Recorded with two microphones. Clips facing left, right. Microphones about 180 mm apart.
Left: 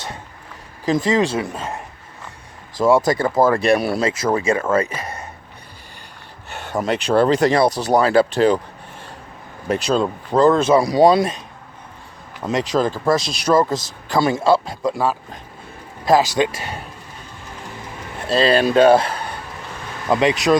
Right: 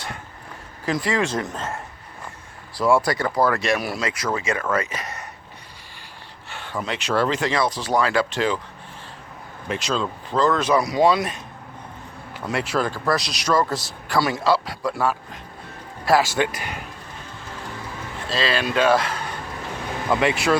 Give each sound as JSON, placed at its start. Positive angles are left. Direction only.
{"t": 0.9, "sound": "speech", "side_deg": 25}
{"t": 1.3, "sound": "a man's voice", "side_deg": 10}
{"t": 3.1, "sound": "speech", "side_deg": 25}
{"t": 6.7, "sound": "speech", "side_deg": 40}
{"t": 9.6, "sound": "speech", "side_deg": 45}
{"t": 10.4, "sound": "speech", "side_deg": 25}
{"t": 12.4, "sound": "speech", "side_deg": 20}
{"t": 18.3, "sound": "speech", "side_deg": 40}
{"t": 20.1, "sound": "speech", "side_deg": 20}